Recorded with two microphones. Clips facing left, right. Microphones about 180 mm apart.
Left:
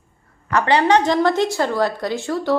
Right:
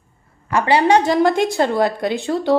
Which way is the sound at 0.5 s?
10° right (ahead or behind).